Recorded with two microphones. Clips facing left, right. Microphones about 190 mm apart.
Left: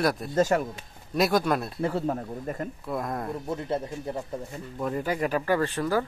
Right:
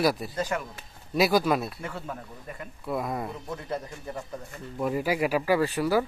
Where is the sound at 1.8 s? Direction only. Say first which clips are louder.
Left 9 dB; 40° left (ahead or behind).